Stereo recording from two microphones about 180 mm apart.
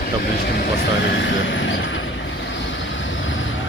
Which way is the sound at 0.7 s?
75° left (ahead or behind).